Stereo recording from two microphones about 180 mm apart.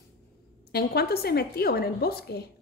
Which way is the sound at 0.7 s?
60° left (ahead or behind).